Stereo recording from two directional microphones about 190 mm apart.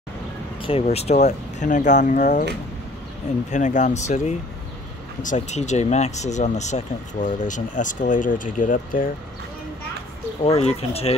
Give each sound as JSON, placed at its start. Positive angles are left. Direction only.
{"t": 0.6, "sound": "speech", "side_deg": 30}
{"t": 3.4, "sound": "speech", "side_deg": 40}
{"t": 10.4, "sound": "speech", "side_deg": 35}